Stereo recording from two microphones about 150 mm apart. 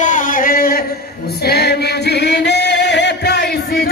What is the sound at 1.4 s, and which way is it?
Music, 90° left.